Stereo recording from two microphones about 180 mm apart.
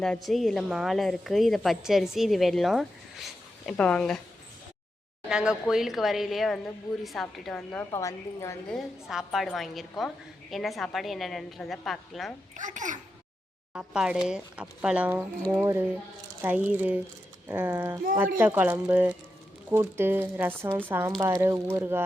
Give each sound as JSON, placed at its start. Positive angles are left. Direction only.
{"t": 0.0, "sound": "a woman's voice", "side_deg": 0}
{"t": 5.3, "sound": "a woman's voice", "side_deg": -5}
{"t": 7.9, "sound": "speech", "side_deg": 15}
{"t": 8.7, "sound": "a woman's voice", "side_deg": 0}
{"t": 12.5, "sound": "a child's voice", "side_deg": -45}
{"t": 13.7, "sound": "a woman's voice", "side_deg": -5}